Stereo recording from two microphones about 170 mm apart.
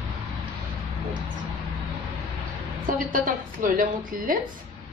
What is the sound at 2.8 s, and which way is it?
A woman's voice, 50° right (ahead or behind).